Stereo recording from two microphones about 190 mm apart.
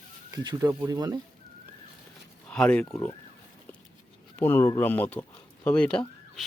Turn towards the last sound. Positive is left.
turn(degrees=5)  # may be behind; listen again after turning